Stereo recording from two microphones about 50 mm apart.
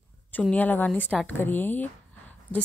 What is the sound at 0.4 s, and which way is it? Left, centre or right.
Speech, left.